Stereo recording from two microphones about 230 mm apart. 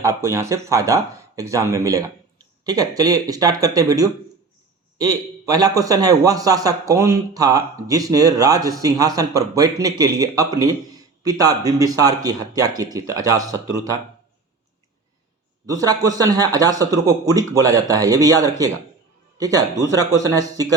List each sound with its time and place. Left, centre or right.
0.0 s a man's voice: centre
15.6 s a man's voice: centre